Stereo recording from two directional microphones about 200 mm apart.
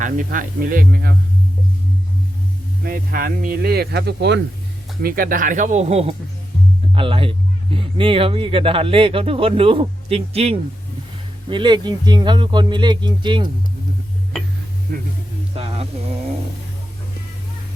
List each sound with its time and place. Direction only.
0.0 s speech: 40° right (ahead or behind)
2.8 s speech: 45° right (ahead or behind)
5.0 s speech: 45° right (ahead or behind); by 13.5 s 25° right (ahead or behind)
14.9 s speech: 45° right (ahead or behind)
15.5 s music: 30° right (ahead or behind)